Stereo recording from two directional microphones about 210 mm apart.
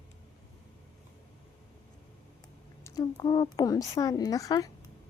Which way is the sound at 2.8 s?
20° left (ahead or behind).